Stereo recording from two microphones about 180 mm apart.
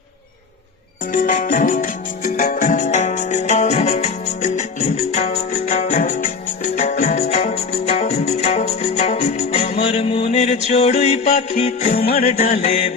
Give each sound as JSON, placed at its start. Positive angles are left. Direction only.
{"t": 1.1, "sound": "music", "side_deg": 45}